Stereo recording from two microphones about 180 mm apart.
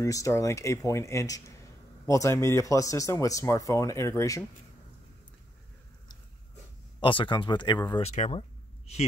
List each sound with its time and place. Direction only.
0.0 s speech: 15° left (ahead or behind)
7.0 s speech: 30° left (ahead or behind)
7.9 s speech: 40° left (ahead or behind)